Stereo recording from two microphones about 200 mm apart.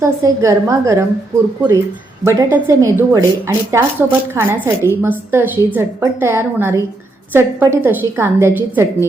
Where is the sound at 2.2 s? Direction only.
15° right (ahead or behind).